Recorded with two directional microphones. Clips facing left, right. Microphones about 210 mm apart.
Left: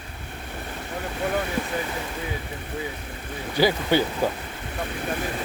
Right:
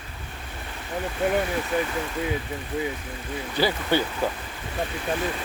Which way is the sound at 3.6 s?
15° left (ahead or behind).